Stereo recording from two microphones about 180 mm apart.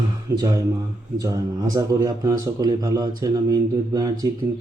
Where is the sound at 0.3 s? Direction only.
20° right (ahead or behind).